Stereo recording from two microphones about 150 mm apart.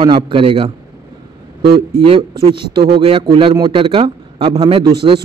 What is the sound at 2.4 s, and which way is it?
A man's voice, 35° right (ahead or behind).